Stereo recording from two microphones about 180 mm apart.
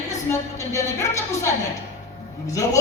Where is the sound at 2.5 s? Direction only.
20° left (ahead or behind).